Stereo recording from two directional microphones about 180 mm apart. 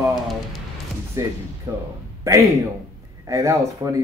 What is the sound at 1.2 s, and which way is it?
Speech, 15° right (ahead or behind).